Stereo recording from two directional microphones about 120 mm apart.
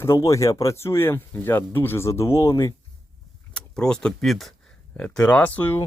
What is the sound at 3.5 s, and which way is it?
Speech, 5° left (ahead or behind).